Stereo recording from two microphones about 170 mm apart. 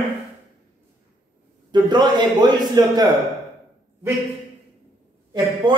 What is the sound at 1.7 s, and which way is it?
A man's voice, 25° right (ahead or behind).